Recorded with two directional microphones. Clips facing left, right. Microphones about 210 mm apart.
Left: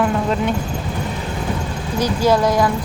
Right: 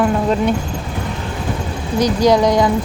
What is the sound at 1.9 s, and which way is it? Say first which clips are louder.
Speech: right 3 dB; 15° right (ahead or behind).